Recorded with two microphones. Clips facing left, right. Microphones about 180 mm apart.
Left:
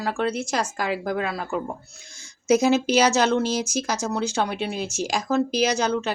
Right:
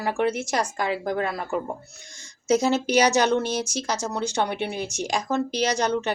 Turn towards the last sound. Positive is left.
turn(degrees=10)  # may be behind; listen again after turning